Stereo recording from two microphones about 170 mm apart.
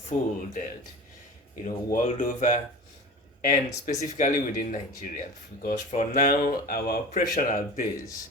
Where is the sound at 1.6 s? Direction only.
50° left (ahead or behind).